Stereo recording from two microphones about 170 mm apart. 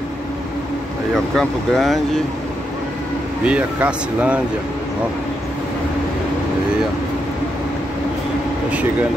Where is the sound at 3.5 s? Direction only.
5° right (ahead or behind).